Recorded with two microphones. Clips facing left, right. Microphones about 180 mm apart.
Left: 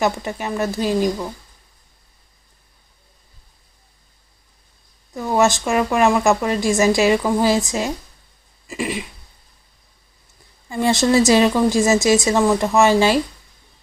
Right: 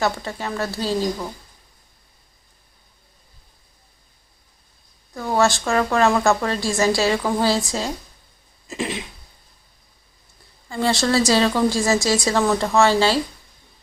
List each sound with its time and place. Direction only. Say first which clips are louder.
0.0 s a woman's voice: left 2 dB; 15° left (ahead or behind)
5.3 s a woman's voice: left 2 dB; 20° left (ahead or behind)
8.6 s throat clearing: left 2 dB; 10° left (ahead or behind)
10.7 s a woman's voice: left 3 dB; 15° left (ahead or behind)